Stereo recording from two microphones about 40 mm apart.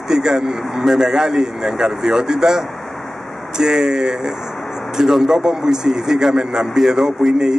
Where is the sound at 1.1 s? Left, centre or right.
Centre.